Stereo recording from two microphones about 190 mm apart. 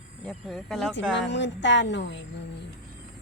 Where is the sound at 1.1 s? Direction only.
70° left (ahead or behind).